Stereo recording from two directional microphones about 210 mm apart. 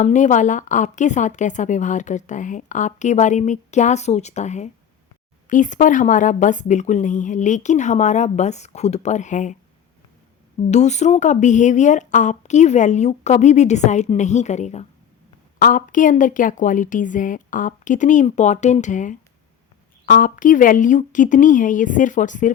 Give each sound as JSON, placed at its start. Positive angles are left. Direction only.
{"t": 0.0, "sound": "a woman's voice", "side_deg": 35}
{"t": 10.7, "sound": "a woman's voice", "side_deg": 35}